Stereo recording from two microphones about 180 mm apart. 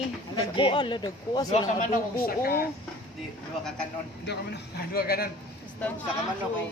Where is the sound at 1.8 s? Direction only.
50° left (ahead or behind).